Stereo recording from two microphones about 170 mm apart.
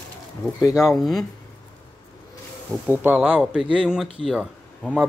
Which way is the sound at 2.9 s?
10° right (ahead or behind).